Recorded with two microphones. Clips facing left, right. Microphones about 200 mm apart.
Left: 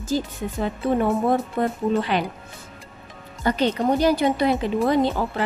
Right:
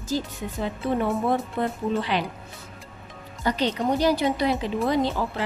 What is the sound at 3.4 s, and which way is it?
Speech, 50° left (ahead or behind).